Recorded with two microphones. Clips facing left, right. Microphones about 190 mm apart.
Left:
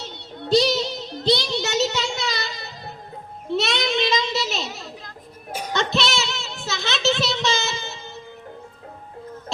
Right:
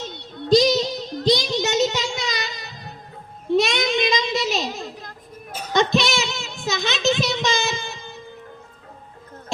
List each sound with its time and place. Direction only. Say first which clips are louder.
0.4 s child singing: right 3 dB; 15° right (ahead or behind)
5.5 s music: left 3 dB; 10° left (ahead or behind)
5.7 s child singing: right 4 dB; 15° right (ahead or behind)